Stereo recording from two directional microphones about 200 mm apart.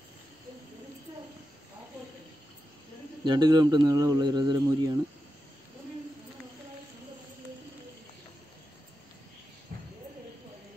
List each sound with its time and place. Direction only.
3.3 s speech: 20° right (ahead or behind)